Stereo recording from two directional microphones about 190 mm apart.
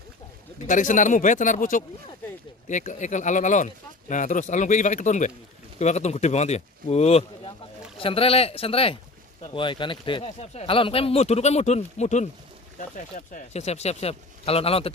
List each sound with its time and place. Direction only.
0.7 s speech: 40° left (ahead or behind)